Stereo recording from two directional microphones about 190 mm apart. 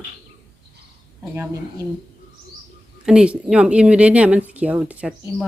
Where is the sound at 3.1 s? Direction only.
5° right (ahead or behind).